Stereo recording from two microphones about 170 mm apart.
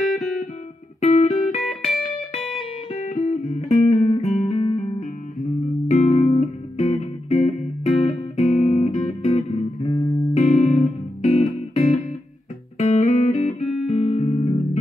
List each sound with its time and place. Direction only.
0.0 s music: centre (ahead or behind)
1.0 s music: 40° left (ahead or behind)
1.6 s music: centre (ahead or behind)
2.9 s music: 40° left (ahead or behind)
9.8 s music: 25° left (ahead or behind)
10.3 s music: 40° left (ahead or behind)